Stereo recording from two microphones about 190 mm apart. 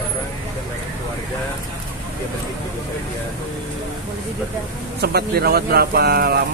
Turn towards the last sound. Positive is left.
turn(degrees=-55)  # may be behind; listen again after turning